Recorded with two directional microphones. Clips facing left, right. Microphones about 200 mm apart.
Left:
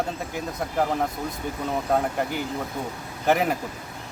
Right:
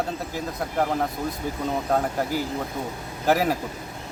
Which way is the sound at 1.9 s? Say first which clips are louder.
Left 1 dB; centre (ahead or behind).